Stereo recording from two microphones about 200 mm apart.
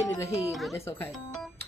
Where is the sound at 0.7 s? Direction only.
15° left (ahead or behind).